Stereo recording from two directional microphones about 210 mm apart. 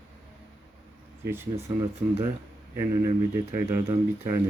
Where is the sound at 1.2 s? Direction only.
10° right (ahead or behind).